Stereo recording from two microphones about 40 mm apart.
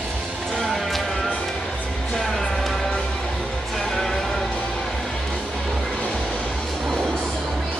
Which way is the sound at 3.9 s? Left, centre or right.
Centre.